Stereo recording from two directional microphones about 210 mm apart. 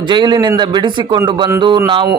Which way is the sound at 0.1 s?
20° right (ahead or behind).